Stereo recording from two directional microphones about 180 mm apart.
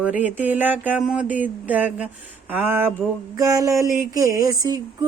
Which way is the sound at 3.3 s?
20° right (ahead or behind).